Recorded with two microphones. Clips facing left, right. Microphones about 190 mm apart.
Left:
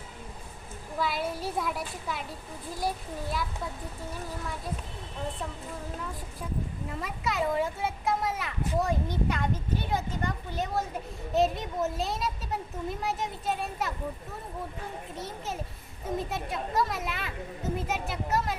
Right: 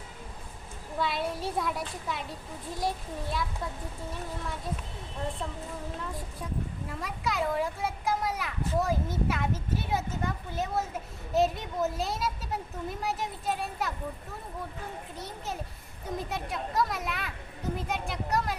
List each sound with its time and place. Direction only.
0.9 s a child's voice: centre (ahead or behind)
6.8 s a child's voice: centre (ahead or behind)
15.1 s a child's voice: centre (ahead or behind)